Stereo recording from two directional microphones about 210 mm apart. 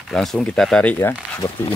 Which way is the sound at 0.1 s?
Centre (ahead or behind).